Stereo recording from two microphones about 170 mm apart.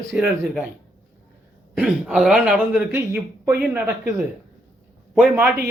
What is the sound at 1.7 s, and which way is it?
Speech, 5° right (ahead or behind).